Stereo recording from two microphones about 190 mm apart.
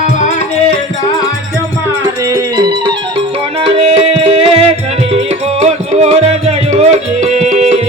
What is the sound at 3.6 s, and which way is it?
Music, 30° right (ahead or behind).